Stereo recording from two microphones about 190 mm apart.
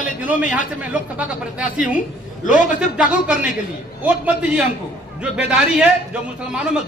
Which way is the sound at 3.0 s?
5° right (ahead or behind).